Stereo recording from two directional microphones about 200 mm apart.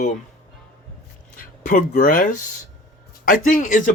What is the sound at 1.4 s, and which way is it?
Speech, 40° left (ahead or behind).